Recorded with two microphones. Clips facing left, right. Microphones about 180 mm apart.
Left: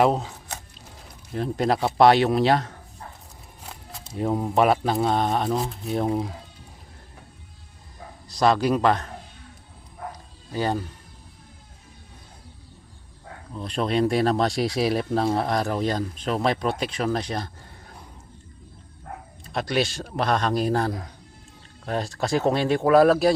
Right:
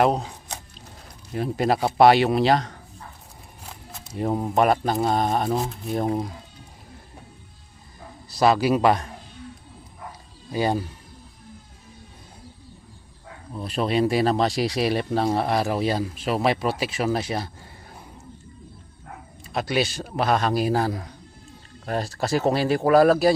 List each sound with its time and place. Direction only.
0.0 s speech: centre (ahead or behind)
0.3 s a sound: 15° right (ahead or behind)
1.3 s speech: 5° right (ahead or behind)
4.2 s speech: 5° right (ahead or behind)
8.3 s a man's voice: 5° right (ahead or behind)
10.5 s a man's voice: 10° right (ahead or behind)
13.5 s speech: 5° right (ahead or behind)
19.5 s speech: centre (ahead or behind)